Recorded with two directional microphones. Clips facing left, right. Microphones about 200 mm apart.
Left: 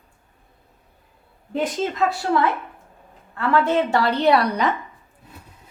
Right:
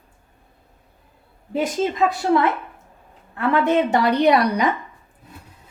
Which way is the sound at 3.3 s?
20° right (ahead or behind).